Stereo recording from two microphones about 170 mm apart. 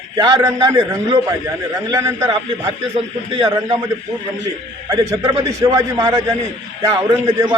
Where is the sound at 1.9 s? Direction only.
20° right (ahead or behind).